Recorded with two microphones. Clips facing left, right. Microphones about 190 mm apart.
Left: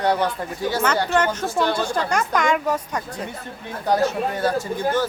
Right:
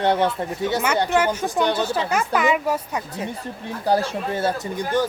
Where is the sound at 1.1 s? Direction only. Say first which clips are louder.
Right 1 dB; 10° right (ahead or behind).